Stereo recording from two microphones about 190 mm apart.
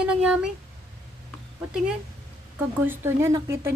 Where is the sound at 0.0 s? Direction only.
5° right (ahead or behind).